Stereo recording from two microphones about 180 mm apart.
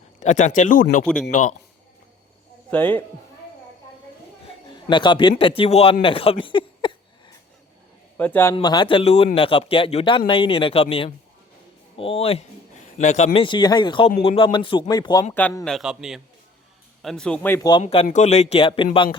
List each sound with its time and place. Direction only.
0.2 s speech: 40° left (ahead or behind)
2.6 s speech: 10° left (ahead or behind)
4.7 s speech: 25° left (ahead or behind)
8.2 s a man's voice: 10° left (ahead or behind)
8.5 s speech: 25° left (ahead or behind)
15.4 s speech: 10° left (ahead or behind)
17.7 s speech: 30° left (ahead or behind)